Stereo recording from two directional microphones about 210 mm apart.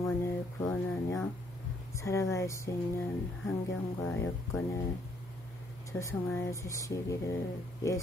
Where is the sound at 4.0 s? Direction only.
15° left (ahead or behind).